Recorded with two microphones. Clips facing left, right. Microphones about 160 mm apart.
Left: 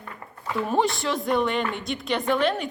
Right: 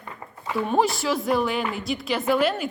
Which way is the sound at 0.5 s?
Centre (ahead or behind).